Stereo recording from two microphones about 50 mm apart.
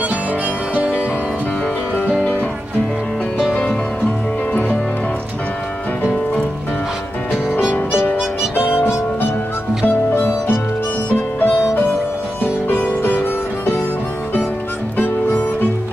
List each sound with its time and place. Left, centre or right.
0.7 s music: right
7.7 s music: left
9.8 s music: left
15.0 s music: left